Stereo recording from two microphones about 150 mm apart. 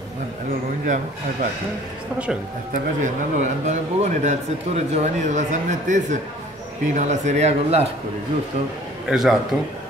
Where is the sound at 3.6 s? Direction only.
50° right (ahead or behind).